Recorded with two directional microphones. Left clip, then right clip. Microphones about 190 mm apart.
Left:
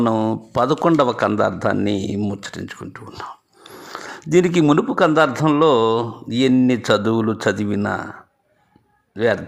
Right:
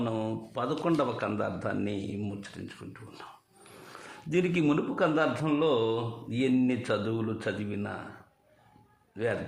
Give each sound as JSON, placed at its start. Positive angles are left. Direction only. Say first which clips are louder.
{"t": 0.0, "sound": "a man's voice", "louder": "left 13 dB", "side_deg": 40}
{"t": 9.1, "sound": "a man's voice", "louder": "left 13 dB", "side_deg": 35}